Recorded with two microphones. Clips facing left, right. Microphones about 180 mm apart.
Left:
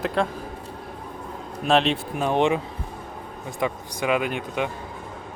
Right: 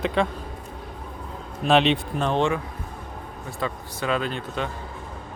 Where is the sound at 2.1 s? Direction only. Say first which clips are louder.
Left 2 dB; 10° left (ahead or behind).